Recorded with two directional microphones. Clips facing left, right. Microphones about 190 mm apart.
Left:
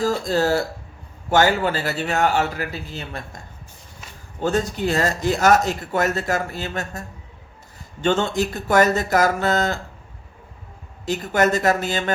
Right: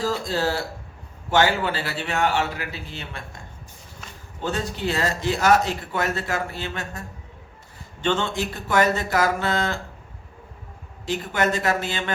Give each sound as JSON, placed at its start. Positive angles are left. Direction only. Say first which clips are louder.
{"t": 0.0, "sound": "a man's voice", "louder": "left 4 dB", "side_deg": 45}
{"t": 4.4, "sound": "speech", "louder": "left 6 dB", "side_deg": 45}
{"t": 8.0, "sound": "a man's voice", "louder": "left 4 dB", "side_deg": 40}
{"t": 11.0, "sound": "a man's voice", "louder": "left 4 dB", "side_deg": 40}